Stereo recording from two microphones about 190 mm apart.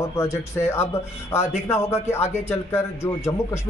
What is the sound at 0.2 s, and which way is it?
Speech, 15° left (ahead or behind).